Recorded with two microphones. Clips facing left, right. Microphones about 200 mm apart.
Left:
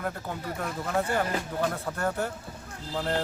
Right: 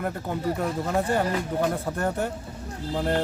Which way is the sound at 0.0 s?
30° right (ahead or behind).